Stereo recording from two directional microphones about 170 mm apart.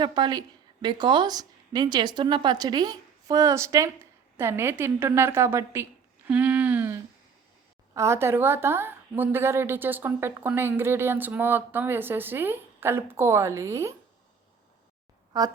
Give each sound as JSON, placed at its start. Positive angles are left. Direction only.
{"t": 0.0, "sound": "a woman's voice", "side_deg": -25}
{"t": 15.3, "sound": "a woman's voice", "side_deg": -25}